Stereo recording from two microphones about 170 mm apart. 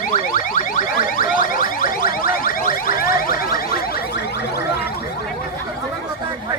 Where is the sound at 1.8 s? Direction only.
55° left (ahead or behind).